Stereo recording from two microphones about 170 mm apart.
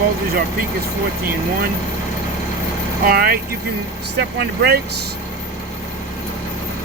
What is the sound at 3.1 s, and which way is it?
Speech, 60° right (ahead or behind).